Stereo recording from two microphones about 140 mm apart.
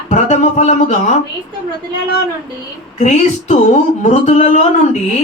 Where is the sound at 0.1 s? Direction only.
55° left (ahead or behind).